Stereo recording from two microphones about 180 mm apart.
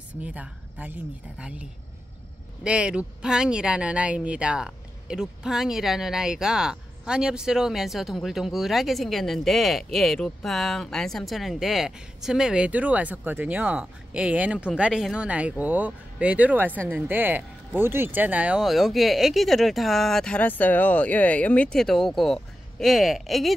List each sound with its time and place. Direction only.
0.2 s speech: 10° right (ahead or behind)
16.7 s speech: 5° left (ahead or behind)
17.1 s speech: 10° right (ahead or behind)